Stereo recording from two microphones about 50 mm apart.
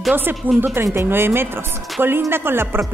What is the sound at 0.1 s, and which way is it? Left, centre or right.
A woman's voice, right.